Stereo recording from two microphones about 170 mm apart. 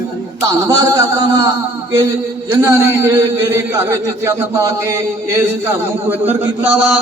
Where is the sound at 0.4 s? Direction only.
20° right (ahead or behind).